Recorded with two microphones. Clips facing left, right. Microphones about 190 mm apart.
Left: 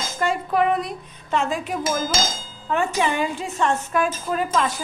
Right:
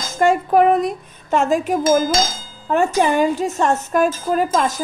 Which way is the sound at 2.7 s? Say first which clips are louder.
Right 6 dB; 45° right (ahead or behind).